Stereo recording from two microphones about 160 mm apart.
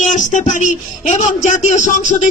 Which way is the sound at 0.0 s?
50° left (ahead or behind).